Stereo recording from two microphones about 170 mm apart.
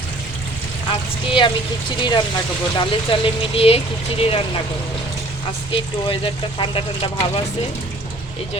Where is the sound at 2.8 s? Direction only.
30° left (ahead or behind).